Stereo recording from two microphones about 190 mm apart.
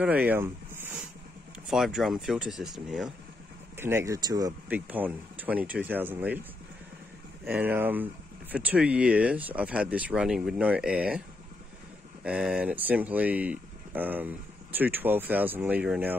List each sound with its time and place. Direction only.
0.0 s speech: 10° right (ahead or behind)
3.7 s speech: 15° right (ahead or behind)
4.6 s speech: 10° right (ahead or behind)
7.4 s speech: 10° right (ahead or behind)